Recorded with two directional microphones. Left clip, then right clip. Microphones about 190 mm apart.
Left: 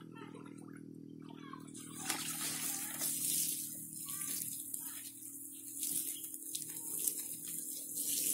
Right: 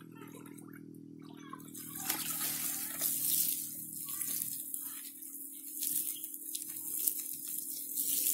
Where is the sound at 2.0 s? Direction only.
25° right (ahead or behind).